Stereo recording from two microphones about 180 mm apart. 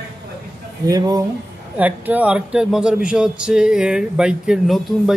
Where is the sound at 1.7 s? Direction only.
10° right (ahead or behind).